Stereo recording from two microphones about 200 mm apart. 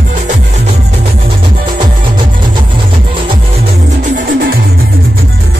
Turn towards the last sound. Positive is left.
turn(degrees=-45)  # may be behind; listen again after turning